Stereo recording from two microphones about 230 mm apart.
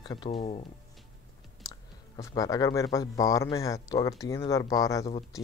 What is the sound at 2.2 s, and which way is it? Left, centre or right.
Speech, centre.